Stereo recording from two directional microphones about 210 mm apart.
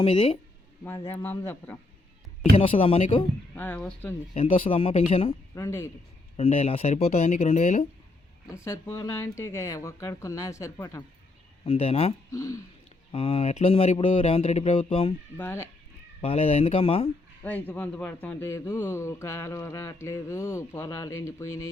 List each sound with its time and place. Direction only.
0.0 s speech: 25° left (ahead or behind)
0.9 s speech: 10° left (ahead or behind)
2.4 s speech: 25° left (ahead or behind)
3.5 s speech: 5° left (ahead or behind)
4.4 s speech: 25° left (ahead or behind)
5.5 s speech: 15° left (ahead or behind)
6.3 s speech: 30° left (ahead or behind)
8.6 s speech: 15° left (ahead or behind)
11.6 s speech: 25° left (ahead or behind)
12.3 s speech: 15° left (ahead or behind)
13.1 s speech: 30° left (ahead or behind)
15.4 s speech: 10° left (ahead or behind)
16.2 s speech: 25° left (ahead or behind)
17.4 s speech: 10° left (ahead or behind)